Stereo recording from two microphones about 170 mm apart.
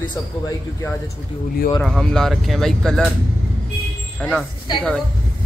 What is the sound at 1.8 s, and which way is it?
Speech, centre (ahead or behind).